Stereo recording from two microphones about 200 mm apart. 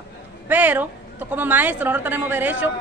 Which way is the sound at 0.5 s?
10° right (ahead or behind).